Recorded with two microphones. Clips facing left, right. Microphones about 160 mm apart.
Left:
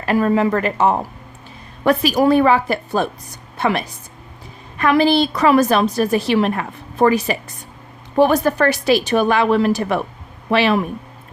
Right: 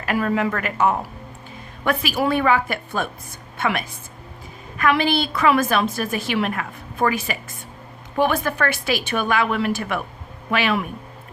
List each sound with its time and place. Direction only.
0.0 s a woman's voice: 35° left (ahead or behind)